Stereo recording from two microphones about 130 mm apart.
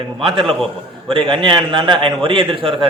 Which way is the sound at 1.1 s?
40° right (ahead or behind).